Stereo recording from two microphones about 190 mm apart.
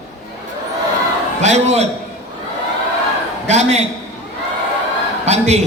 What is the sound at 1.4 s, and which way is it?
Speech, 35° right (ahead or behind).